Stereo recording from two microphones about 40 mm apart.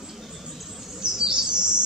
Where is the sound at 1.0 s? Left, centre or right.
Right.